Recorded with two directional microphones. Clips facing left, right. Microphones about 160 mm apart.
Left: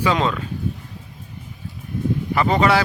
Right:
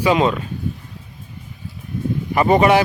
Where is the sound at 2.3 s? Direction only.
20° right (ahead or behind).